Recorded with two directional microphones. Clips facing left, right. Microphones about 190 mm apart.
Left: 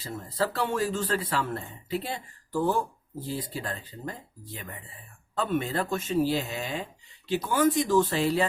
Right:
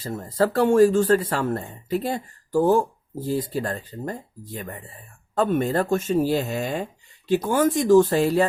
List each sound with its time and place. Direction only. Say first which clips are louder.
0.0 s speech: right 7 dB; 45° right (ahead or behind)